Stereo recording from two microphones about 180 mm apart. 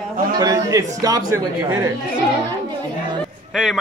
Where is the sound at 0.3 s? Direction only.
20° right (ahead or behind).